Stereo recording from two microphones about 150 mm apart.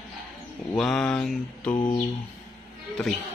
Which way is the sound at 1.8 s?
30° left (ahead or behind).